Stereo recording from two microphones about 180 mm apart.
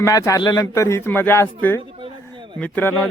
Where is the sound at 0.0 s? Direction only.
15° left (ahead or behind).